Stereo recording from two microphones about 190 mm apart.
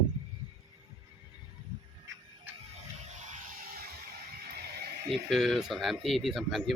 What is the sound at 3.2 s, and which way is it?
Music, 40° right (ahead or behind).